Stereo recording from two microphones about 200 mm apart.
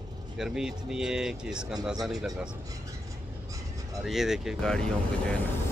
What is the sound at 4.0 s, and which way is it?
Speech, centre (ahead or behind).